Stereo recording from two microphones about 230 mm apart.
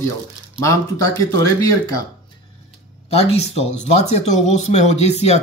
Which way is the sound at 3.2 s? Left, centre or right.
Left.